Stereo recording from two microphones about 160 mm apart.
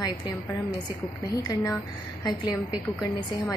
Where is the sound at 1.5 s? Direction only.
20° left (ahead or behind).